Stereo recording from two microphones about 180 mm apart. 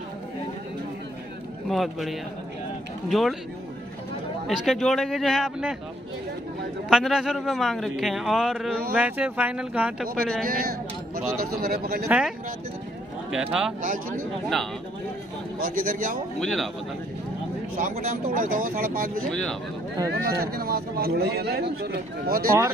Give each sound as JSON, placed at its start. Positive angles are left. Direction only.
{"t": 1.7, "sound": "a man's voice", "side_deg": 0}
{"t": 4.5, "sound": "a man's voice", "side_deg": 0}
{"t": 6.9, "sound": "a man's voice", "side_deg": -5}
{"t": 10.4, "sound": "a man's voice", "side_deg": -55}
{"t": 12.1, "sound": "a man's voice", "side_deg": -5}
{"t": 13.8, "sound": "speech", "side_deg": -50}
{"t": 15.6, "sound": "speech", "side_deg": -50}
{"t": 16.3, "sound": "a man's voice", "side_deg": 0}
{"t": 17.7, "sound": "a man's voice", "side_deg": -50}